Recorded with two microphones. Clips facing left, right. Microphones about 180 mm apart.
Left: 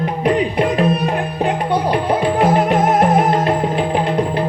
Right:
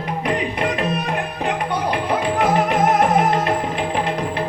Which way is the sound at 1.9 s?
35° left (ahead or behind).